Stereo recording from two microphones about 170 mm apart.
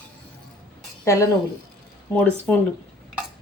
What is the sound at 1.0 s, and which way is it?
Speech, 20° left (ahead or behind).